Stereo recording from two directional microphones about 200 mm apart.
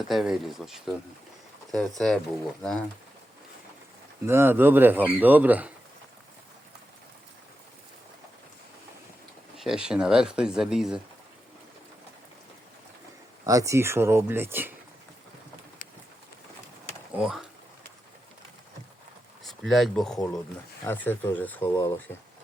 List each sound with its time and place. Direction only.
0.1 s speech: centre (ahead or behind)
2.0 s speech: centre (ahead or behind)
4.3 s speech: 10° right (ahead or behind)
9.6 s speech: 5° right (ahead or behind)
13.4 s speech: 15° right (ahead or behind)
17.1 s speech: 5° right (ahead or behind)
19.5 s speech: centre (ahead or behind)